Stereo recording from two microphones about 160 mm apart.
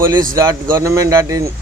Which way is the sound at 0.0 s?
20° right (ahead or behind).